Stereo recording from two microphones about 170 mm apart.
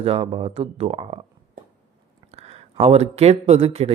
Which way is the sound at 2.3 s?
40° right (ahead or behind).